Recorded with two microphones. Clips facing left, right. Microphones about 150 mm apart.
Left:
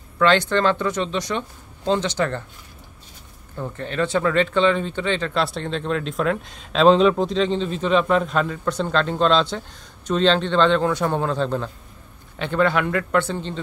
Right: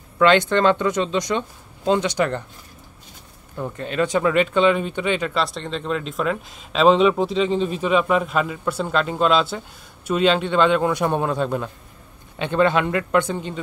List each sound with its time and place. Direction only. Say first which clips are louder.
0.2 s speech: right 2 dB; 15° right (ahead or behind)
3.5 s speech: right 2 dB; 15° right (ahead or behind)
5.3 s a man's voice: left 1 dB; centre (ahead or behind)